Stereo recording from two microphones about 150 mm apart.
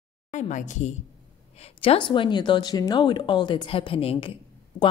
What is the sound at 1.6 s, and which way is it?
Speech, 40° left (ahead or behind).